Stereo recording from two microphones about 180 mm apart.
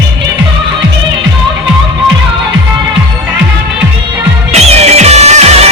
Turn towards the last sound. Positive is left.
turn(degrees=-35)  # may be behind; listen again after turning